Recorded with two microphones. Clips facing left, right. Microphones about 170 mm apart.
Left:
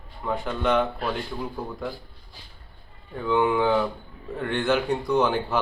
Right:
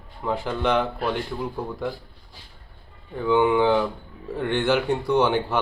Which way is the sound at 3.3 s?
5° right (ahead or behind).